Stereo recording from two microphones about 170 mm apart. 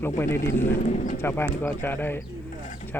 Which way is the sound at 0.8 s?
45° left (ahead or behind).